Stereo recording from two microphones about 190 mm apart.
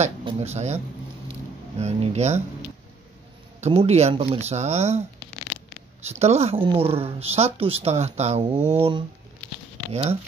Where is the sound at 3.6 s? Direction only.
30° right (ahead or behind).